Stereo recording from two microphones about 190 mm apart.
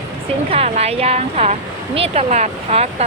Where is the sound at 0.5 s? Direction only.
35° right (ahead or behind).